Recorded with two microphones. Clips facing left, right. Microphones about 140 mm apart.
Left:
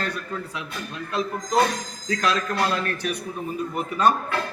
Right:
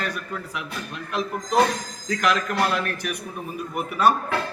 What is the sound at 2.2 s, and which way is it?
A man's voice, 15° right (ahead or behind).